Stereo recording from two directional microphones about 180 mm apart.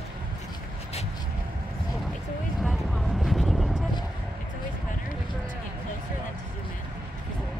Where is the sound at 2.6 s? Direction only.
Centre (ahead or behind).